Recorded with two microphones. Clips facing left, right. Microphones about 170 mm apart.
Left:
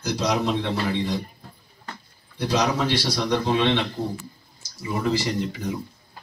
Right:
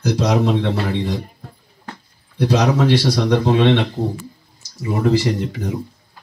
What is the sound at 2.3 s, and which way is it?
Speech, 60° right (ahead or behind).